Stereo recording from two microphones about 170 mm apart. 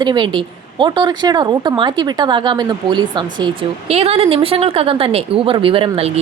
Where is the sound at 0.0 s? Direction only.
25° right (ahead or behind).